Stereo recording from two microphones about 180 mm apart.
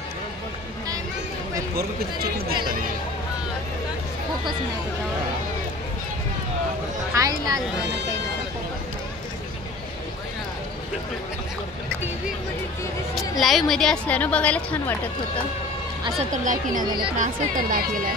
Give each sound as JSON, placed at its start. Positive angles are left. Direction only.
{"t": 2.3, "sound": "speech", "side_deg": -60}
{"t": 7.2, "sound": "speech", "side_deg": -20}
{"t": 13.4, "sound": "a woman's voice", "side_deg": 0}
{"t": 16.3, "sound": "speech", "side_deg": -45}
{"t": 16.8, "sound": "speech", "side_deg": -25}
{"t": 17.2, "sound": "speech", "side_deg": -50}